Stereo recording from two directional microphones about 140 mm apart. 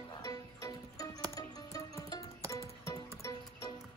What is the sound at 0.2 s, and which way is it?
Music, 25° left (ahead or behind).